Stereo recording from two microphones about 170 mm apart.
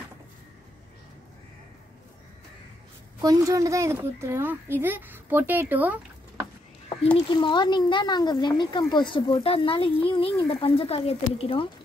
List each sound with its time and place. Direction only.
3.2 s a woman's voice: 20° right (ahead or behind)
7.2 s speech: 25° left (ahead or behind)